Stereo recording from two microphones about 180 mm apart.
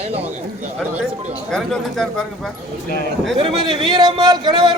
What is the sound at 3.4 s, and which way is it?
A man's voice, 30° right (ahead or behind).